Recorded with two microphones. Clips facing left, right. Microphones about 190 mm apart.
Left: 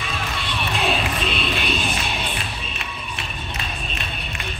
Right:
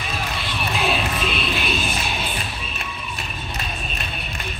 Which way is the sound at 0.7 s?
Centre (ahead or behind).